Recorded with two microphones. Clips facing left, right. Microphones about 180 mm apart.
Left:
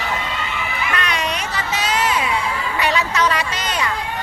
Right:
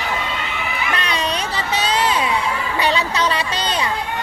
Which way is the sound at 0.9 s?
30° right (ahead or behind).